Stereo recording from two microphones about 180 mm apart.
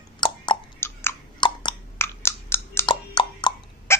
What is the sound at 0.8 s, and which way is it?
Chewing, 15° left (ahead or behind).